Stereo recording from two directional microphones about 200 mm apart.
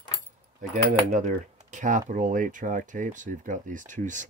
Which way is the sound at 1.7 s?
40° right (ahead or behind).